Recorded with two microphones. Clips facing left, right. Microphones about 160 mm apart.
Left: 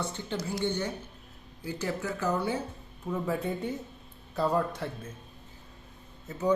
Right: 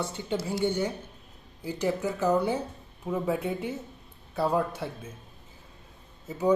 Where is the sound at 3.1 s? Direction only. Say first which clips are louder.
Right 2 dB; 10° right (ahead or behind).